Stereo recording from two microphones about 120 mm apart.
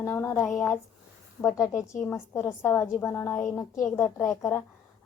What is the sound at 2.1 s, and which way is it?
A woman's voice, 20° left (ahead or behind).